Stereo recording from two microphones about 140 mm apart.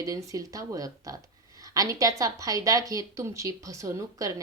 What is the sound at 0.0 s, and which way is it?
A woman's voice, 25° right (ahead or behind).